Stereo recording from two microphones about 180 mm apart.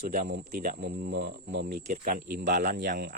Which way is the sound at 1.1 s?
65° right (ahead or behind).